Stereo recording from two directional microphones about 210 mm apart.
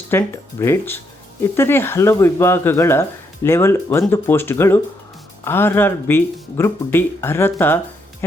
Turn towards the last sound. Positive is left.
turn(degrees=10)  # may be behind; listen again after turning